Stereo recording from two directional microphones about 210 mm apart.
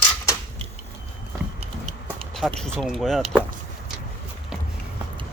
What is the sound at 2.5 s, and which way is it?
Speech, 5° left (ahead or behind).